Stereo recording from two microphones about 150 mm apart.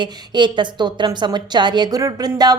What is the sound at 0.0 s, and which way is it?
A woman's voice, 30° right (ahead or behind).